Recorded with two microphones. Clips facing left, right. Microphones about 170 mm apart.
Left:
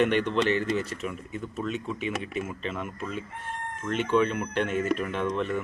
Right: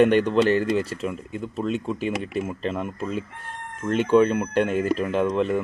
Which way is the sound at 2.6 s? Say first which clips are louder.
Right 6 dB; 35° right (ahead or behind).